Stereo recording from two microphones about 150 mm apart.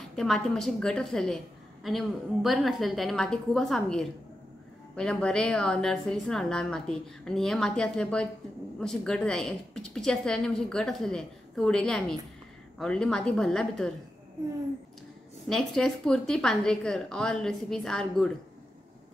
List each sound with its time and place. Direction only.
0.1 s a woman's voice: 5° left (ahead or behind)
15.4 s a woman's voice: 5° left (ahead or behind)